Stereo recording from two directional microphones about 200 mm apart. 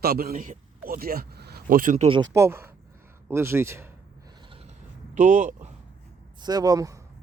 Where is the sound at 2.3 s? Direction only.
15° right (ahead or behind).